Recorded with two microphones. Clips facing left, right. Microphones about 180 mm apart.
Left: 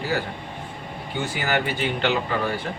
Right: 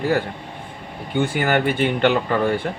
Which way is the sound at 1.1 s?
55° right (ahead or behind).